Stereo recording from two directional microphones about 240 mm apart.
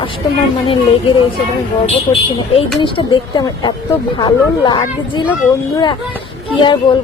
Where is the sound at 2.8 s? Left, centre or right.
Left.